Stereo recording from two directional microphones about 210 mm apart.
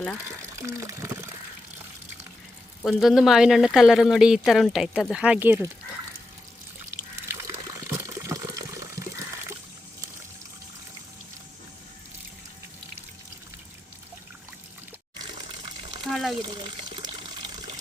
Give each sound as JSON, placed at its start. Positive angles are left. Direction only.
{"t": 0.3, "sound": "speech", "side_deg": -15}
{"t": 2.8, "sound": "speech", "side_deg": 0}
{"t": 7.3, "sound": "water", "side_deg": -15}
{"t": 15.4, "sound": "water", "side_deg": -25}
{"t": 16.0, "sound": "water", "side_deg": 0}
{"t": 16.4, "sound": "water", "side_deg": -20}